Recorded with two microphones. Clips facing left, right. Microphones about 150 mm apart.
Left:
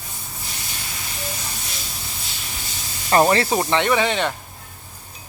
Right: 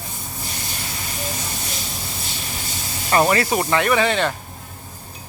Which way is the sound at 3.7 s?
20° left (ahead or behind).